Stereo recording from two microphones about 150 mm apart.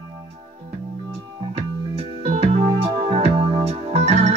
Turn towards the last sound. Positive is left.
turn(degrees=-45)  # may be behind; listen again after turning